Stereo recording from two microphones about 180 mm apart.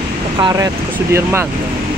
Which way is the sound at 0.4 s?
20° right (ahead or behind).